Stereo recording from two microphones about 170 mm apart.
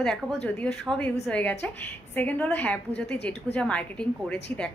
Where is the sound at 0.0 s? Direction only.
Centre (ahead or behind).